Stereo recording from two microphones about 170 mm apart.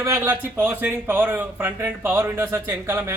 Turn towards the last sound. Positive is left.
turn(degrees=-10)  # may be behind; listen again after turning